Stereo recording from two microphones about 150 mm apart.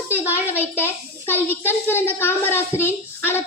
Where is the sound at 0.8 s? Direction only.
15° left (ahead or behind).